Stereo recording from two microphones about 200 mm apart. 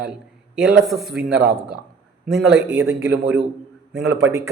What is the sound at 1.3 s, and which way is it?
Speech, 55° right (ahead or behind).